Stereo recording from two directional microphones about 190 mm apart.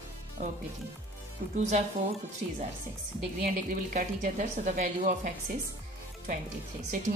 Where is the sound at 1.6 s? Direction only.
35° right (ahead or behind).